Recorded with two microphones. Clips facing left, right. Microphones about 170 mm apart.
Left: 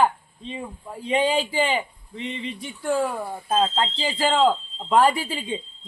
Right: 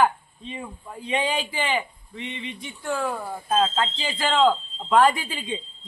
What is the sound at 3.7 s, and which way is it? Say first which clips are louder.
A man's voice: left 2 dB; 35° left (ahead or behind).